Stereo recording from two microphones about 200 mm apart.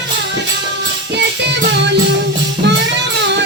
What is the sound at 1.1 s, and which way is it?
Music, 60° right (ahead or behind).